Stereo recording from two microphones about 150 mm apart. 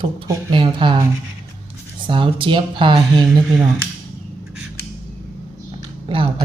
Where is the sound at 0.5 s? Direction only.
35° right (ahead or behind).